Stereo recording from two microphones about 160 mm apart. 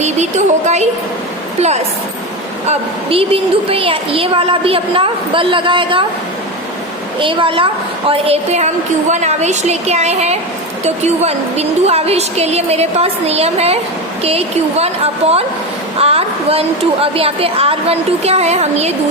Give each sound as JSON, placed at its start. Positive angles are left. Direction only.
{"t": 0.0, "sound": "music", "side_deg": -45}
{"t": 2.6, "sound": "a woman's voice", "side_deg": -35}
{"t": 7.2, "sound": "a woman's voice", "side_deg": -30}